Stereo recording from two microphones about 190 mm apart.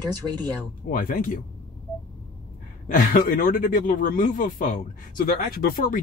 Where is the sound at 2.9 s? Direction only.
50° left (ahead or behind).